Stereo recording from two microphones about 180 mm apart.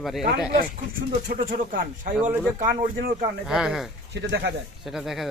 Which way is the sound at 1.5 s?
50° right (ahead or behind).